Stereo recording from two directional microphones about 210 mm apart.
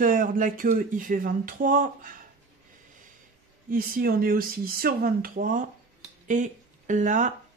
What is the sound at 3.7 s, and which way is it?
Speech, 45° right (ahead or behind).